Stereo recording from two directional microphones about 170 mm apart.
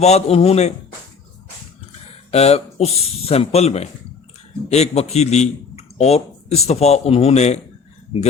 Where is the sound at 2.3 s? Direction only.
40° left (ahead or behind).